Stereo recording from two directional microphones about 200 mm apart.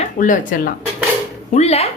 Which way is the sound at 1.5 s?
30° left (ahead or behind).